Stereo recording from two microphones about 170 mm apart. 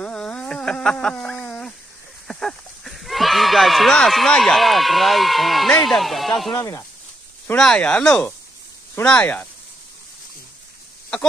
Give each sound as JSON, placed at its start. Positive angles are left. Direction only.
{"t": 0.0, "sound": "a sound", "side_deg": 5}
{"t": 2.2, "sound": "speech", "side_deg": 0}
{"t": 6.5, "sound": "speech", "side_deg": 20}
{"t": 7.4, "sound": "speech", "side_deg": 5}